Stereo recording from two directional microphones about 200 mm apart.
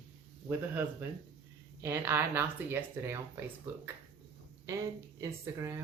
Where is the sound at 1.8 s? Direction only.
10° right (ahead or behind).